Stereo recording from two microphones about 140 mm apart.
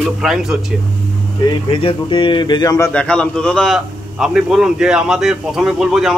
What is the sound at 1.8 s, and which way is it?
Speech, 35° left (ahead or behind).